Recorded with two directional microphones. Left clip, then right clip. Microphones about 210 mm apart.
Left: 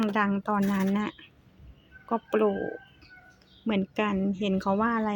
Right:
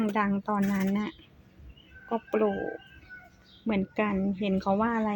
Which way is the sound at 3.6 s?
15° left (ahead or behind).